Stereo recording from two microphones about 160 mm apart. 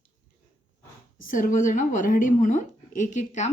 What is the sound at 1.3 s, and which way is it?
Speech, 60° left (ahead or behind).